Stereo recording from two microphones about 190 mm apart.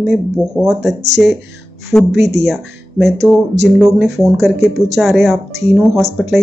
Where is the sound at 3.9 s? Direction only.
Centre (ahead or behind).